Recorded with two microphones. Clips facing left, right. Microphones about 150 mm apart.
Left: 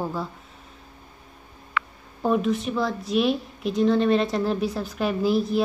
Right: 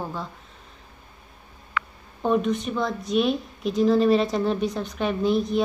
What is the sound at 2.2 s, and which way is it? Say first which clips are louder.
A woman's voice: even; 5° left (ahead or behind).